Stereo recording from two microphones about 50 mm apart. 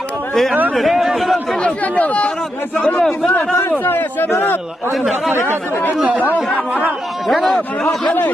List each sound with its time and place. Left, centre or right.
0.3 s a man's voice: centre
1.6 s speech: left
3.8 s a man's voice: left
4.9 s a man's voice: centre
7.2 s a man's voice: centre
7.5 s a man's voice: centre